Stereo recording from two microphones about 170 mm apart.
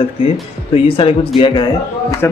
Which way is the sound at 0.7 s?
30° left (ahead or behind).